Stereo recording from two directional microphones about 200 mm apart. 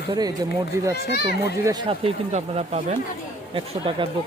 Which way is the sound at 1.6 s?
25° right (ahead or behind).